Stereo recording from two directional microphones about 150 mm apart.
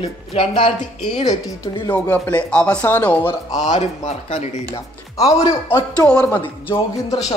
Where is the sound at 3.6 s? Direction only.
50° left (ahead or behind).